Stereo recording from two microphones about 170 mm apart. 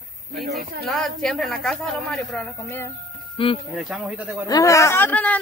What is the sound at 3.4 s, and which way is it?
Speech, 30° left (ahead or behind).